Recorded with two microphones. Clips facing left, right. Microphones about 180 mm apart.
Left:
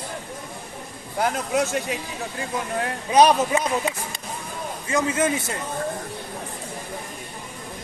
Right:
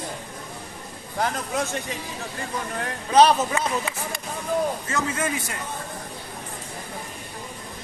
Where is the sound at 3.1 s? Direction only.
15° left (ahead or behind).